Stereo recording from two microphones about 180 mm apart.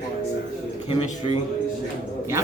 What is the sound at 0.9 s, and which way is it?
Speech, 35° left (ahead or behind).